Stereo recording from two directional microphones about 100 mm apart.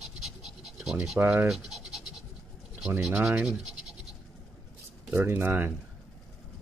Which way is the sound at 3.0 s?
5° right (ahead or behind).